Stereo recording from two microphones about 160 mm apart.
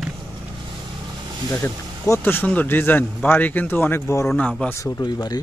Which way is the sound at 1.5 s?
10° left (ahead or behind).